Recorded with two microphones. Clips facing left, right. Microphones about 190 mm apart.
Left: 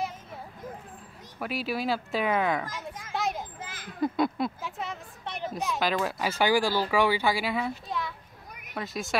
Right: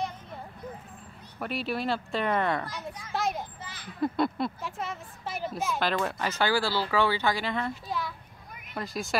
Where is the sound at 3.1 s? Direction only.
Centre (ahead or behind).